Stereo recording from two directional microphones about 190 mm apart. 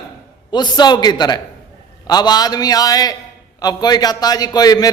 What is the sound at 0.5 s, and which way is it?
A man's voice, 20° left (ahead or behind).